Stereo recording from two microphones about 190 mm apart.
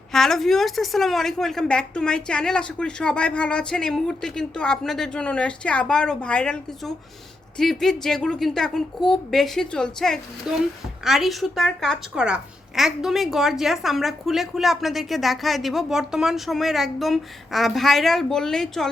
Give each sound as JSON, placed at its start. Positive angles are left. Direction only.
{"t": 0.1, "sound": "a woman's voice", "side_deg": 0}